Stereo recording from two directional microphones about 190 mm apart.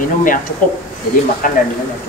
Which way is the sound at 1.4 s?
45° left (ahead or behind).